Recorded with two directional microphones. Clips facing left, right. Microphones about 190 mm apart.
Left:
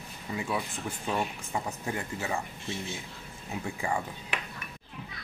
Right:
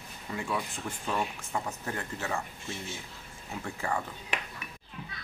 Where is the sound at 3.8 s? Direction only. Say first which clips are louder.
Left 1 dB; 10° left (ahead or behind).